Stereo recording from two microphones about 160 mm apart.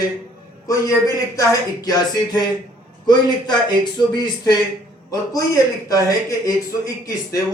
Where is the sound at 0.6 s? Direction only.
20° left (ahead or behind).